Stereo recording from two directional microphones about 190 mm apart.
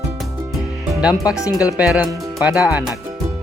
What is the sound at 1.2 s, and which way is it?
Speech, 15° left (ahead or behind).